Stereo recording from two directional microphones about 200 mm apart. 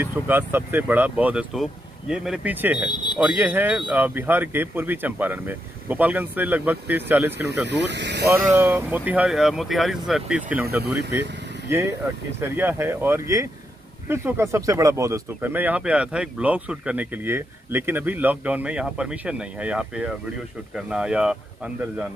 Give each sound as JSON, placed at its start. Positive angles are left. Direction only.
{"t": 0.0, "sound": "speech", "side_deg": -10}
{"t": 2.9, "sound": "a sound", "side_deg": 25}
{"t": 3.2, "sound": "speech", "side_deg": -5}
{"t": 7.6, "sound": "speech", "side_deg": -60}
{"t": 8.5, "sound": "speech", "side_deg": -10}